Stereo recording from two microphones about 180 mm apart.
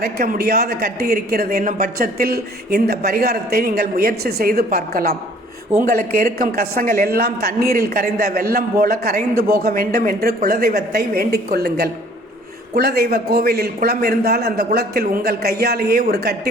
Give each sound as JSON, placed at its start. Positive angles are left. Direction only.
{"t": 0.0, "sound": "speech", "side_deg": -60}